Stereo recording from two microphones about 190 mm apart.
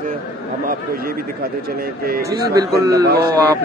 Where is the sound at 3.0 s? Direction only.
55° right (ahead or behind).